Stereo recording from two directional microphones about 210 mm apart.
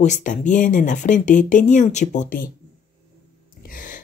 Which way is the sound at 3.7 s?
40° left (ahead or behind).